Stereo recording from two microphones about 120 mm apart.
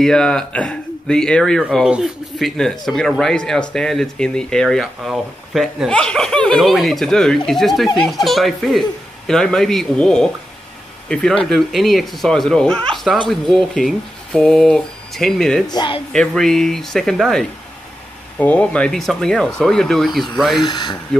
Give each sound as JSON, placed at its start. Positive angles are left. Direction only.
{"t": 0.0, "sound": "speech", "side_deg": 5}
{"t": 15.7, "sound": "speech", "side_deg": 40}
{"t": 16.1, "sound": "speech", "side_deg": 5}
{"t": 20.6, "sound": "speech", "side_deg": 40}